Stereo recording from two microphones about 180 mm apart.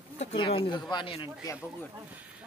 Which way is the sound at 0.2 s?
35° left (ahead or behind).